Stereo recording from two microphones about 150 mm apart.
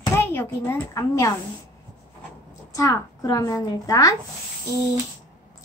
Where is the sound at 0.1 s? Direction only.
15° left (ahead or behind).